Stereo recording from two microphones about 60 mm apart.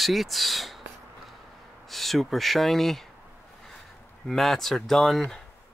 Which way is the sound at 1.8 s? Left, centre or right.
Centre.